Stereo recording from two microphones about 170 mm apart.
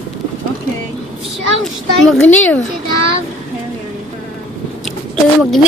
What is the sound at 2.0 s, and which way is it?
Speech, 5° left (ahead or behind).